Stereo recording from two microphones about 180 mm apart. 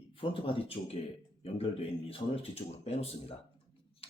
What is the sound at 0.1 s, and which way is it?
Speech, 30° left (ahead or behind).